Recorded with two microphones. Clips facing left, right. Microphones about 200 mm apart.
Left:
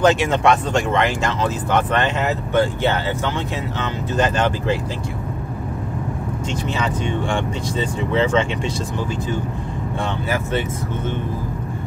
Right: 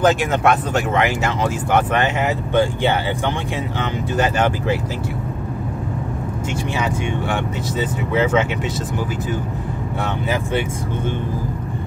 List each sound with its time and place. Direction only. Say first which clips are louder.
0.0 s speech: even; centre (ahead or behind)
4.2 s speech: even; 10° right (ahead or behind)
6.8 s speech: even; 5° right (ahead or behind)